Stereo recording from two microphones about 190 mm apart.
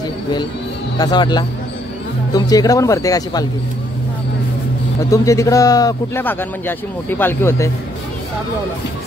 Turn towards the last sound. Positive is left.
turn(degrees=10)  # may be behind; listen again after turning